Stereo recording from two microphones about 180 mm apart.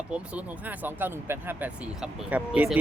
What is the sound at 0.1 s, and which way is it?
Speech, 10° right (ahead or behind).